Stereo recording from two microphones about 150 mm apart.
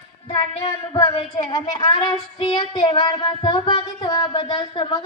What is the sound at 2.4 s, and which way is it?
Music, 30° left (ahead or behind).